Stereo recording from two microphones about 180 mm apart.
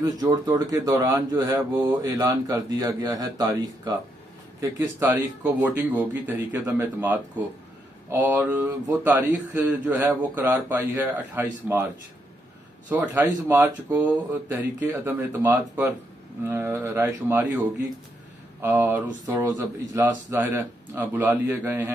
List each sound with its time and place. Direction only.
0.0 s speech: 20° right (ahead or behind)
4.6 s speech: 10° right (ahead or behind)
12.9 s speech: 15° right (ahead or behind)